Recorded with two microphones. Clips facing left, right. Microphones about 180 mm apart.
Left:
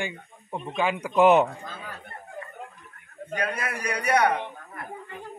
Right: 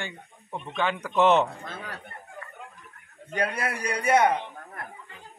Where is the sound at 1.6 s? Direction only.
75° right (ahead or behind).